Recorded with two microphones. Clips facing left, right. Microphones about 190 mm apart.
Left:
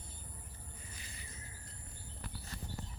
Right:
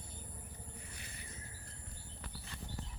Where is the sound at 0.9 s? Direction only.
60° right (ahead or behind).